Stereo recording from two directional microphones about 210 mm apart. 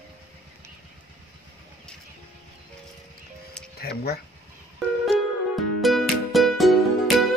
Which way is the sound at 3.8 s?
50° left (ahead or behind).